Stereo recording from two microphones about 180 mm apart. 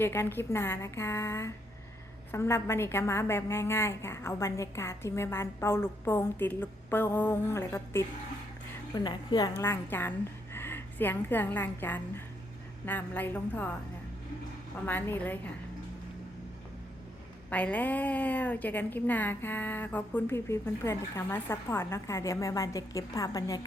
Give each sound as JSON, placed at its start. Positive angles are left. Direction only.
{"t": 0.0, "sound": "a woman's voice", "side_deg": 15}
{"t": 14.8, "sound": "a woman's voice", "side_deg": 10}
{"t": 17.5, "sound": "a woman's voice", "side_deg": 10}